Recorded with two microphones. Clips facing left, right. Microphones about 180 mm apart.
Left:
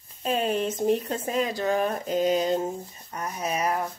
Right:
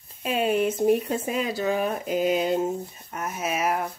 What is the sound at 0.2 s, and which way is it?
Speech, 10° right (ahead or behind).